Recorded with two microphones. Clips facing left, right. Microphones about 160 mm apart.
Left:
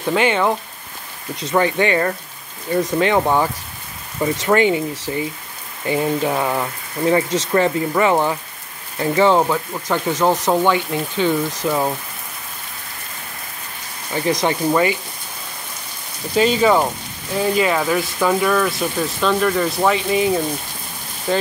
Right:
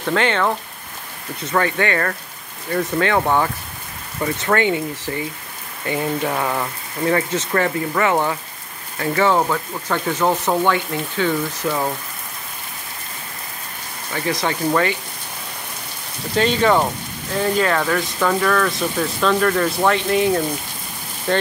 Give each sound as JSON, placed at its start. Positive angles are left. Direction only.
{"t": 0.0, "sound": "speech", "side_deg": 15}
{"t": 14.1, "sound": "speech", "side_deg": 20}
{"t": 16.3, "sound": "speech", "side_deg": 10}